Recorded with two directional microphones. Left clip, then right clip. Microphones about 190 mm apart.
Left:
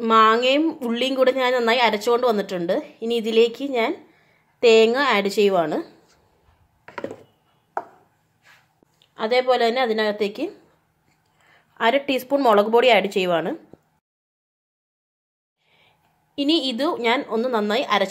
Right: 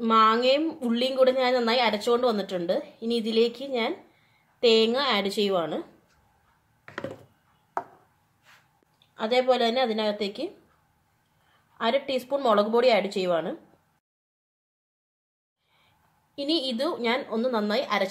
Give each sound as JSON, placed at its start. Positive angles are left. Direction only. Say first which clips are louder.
{"t": 0.0, "sound": "speech", "louder": "left 5 dB", "side_deg": 30}
{"t": 9.1, "sound": "a woman's voice", "louder": "left 4 dB", "side_deg": 25}
{"t": 11.7, "sound": "speech", "louder": "left 6 dB", "side_deg": 35}
{"t": 16.3, "sound": "a woman's voice", "louder": "left 6 dB", "side_deg": 30}